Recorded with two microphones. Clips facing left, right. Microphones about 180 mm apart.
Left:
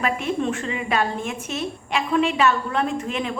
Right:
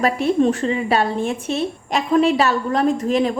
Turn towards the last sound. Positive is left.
turn(degrees=-35)  # may be behind; listen again after turning